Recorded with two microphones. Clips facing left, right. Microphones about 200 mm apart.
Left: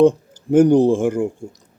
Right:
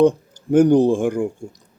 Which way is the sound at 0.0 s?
5° left (ahead or behind).